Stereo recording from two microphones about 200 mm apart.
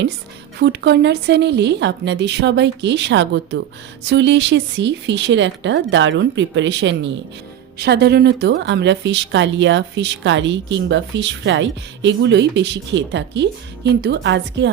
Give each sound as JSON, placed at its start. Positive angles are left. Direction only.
{"t": 0.6, "sound": "a woman's voice", "side_deg": -60}